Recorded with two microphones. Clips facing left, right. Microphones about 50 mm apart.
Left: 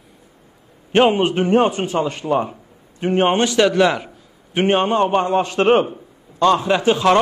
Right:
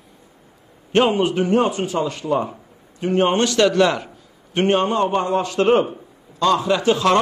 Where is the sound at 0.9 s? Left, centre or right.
Left.